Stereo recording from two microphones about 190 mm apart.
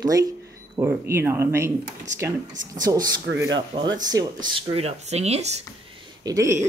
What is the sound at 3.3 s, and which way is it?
Speech, 70° right (ahead or behind).